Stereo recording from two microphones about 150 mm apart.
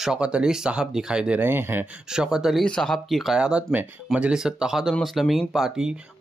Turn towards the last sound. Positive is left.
turn(degrees=-5)  # may be behind; listen again after turning